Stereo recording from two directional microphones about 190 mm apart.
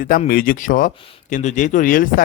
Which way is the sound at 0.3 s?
45° left (ahead or behind).